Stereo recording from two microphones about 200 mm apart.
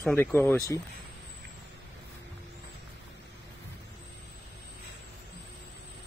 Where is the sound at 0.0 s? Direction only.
10° left (ahead or behind).